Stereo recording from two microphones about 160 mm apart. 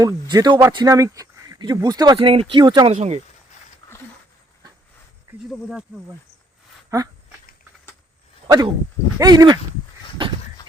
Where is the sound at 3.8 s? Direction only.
30° left (ahead or behind).